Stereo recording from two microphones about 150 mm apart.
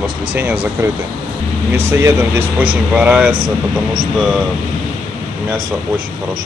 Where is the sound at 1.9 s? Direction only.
15° right (ahead or behind).